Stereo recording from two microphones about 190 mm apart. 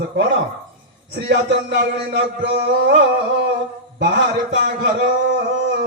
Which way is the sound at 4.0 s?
65° right (ahead or behind).